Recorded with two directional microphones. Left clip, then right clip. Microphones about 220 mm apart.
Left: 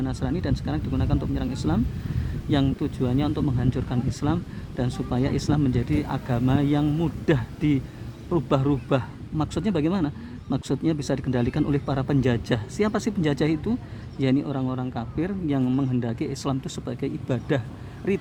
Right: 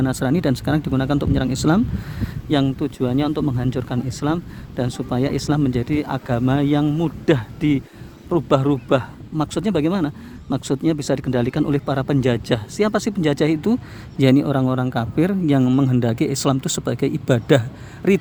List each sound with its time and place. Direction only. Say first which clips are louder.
0.0 s a man's voice: right 9 dB; 35° right (ahead or behind)